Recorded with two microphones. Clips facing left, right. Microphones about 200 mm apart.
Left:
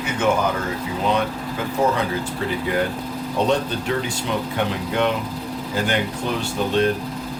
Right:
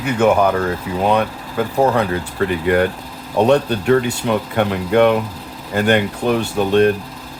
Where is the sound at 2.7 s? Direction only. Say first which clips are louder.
Right 6 dB; 65° right (ahead or behind).